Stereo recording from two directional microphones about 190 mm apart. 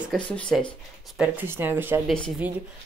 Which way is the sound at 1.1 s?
10° right (ahead or behind).